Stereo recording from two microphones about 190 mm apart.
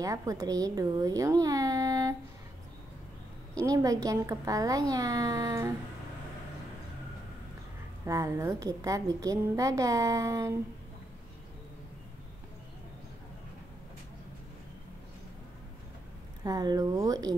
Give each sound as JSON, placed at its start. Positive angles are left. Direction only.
{"t": 0.0, "sound": "a woman's voice", "side_deg": -15}
{"t": 3.5, "sound": "a woman's voice", "side_deg": -15}
{"t": 8.0, "sound": "a woman's voice", "side_deg": -15}
{"t": 16.4, "sound": "speech", "side_deg": -20}